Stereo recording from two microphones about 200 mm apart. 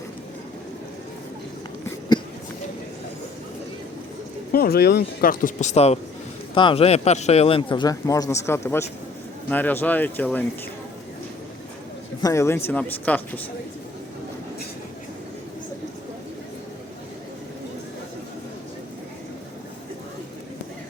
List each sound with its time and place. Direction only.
4.5 s speech: 50° left (ahead or behind); by 10.4 s 10° left (ahead or behind)
12.2 s speech: 15° left (ahead or behind)